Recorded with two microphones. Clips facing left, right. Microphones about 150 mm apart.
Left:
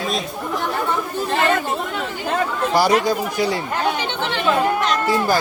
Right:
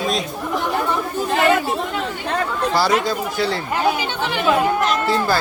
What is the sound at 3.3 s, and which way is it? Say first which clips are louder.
Speech: left 1 dB; 15° left (ahead or behind).